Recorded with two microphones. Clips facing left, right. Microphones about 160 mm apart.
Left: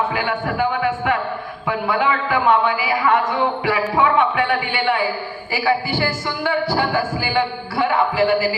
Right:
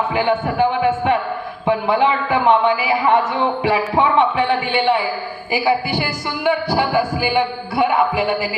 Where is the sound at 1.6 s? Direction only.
25° right (ahead or behind).